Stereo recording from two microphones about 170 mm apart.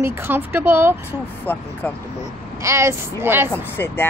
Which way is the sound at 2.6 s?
15° right (ahead or behind).